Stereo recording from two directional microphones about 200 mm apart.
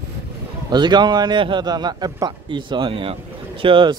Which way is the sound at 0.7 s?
20° right (ahead or behind).